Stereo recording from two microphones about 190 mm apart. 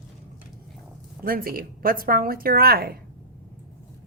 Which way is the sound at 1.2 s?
50° right (ahead or behind).